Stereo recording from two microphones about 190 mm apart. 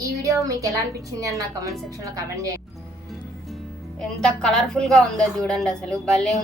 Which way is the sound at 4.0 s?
5° left (ahead or behind).